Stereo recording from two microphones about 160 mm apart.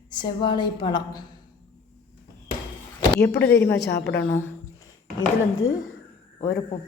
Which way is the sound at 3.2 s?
90° left.